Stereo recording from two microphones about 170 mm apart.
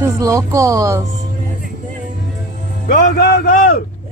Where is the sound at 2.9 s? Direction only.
70° left (ahead or behind).